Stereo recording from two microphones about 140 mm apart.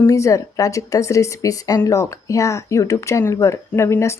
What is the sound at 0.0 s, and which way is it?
Speech, 20° left (ahead or behind).